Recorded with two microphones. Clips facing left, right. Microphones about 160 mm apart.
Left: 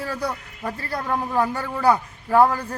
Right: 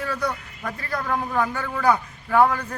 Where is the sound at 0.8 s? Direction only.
35° left (ahead or behind).